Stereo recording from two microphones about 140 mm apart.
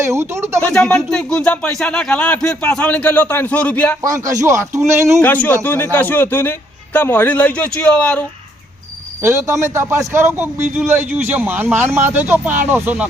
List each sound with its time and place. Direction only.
0.0 s speech: 20° right (ahead or behind)
0.6 s a man's voice: 5° left (ahead or behind)
4.0 s speech: 25° right (ahead or behind)
5.2 s a man's voice: 10° left (ahead or behind)
9.2 s a man's voice: 20° right (ahead or behind)